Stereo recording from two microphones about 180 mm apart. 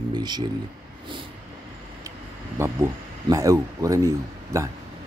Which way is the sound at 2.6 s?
15° right (ahead or behind).